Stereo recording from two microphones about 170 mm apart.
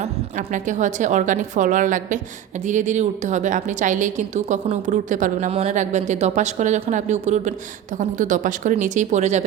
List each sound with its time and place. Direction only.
0.0 s a woman's voice: 45° right (ahead or behind)